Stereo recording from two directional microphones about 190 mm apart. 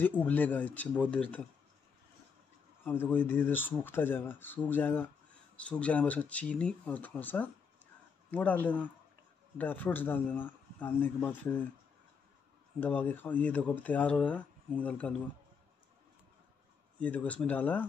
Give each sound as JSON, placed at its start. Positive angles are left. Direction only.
{"t": 0.0, "sound": "speech", "side_deg": 10}
{"t": 2.8, "sound": "speech", "side_deg": 10}
{"t": 12.8, "sound": "speech", "side_deg": 10}
{"t": 17.0, "sound": "speech", "side_deg": 10}